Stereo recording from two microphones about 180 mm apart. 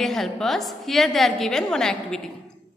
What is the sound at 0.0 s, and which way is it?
A woman's voice, centre (ahead or behind).